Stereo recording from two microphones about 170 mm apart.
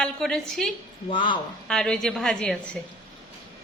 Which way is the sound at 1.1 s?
30° left (ahead or behind).